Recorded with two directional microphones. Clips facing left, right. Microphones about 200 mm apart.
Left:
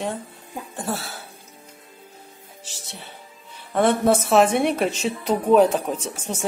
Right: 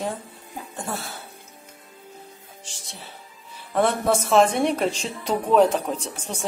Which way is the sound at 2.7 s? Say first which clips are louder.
Left 4 dB; 5° left (ahead or behind).